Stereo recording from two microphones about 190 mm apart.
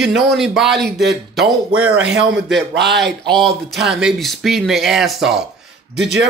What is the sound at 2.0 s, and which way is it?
Speech, 65° right (ahead or behind).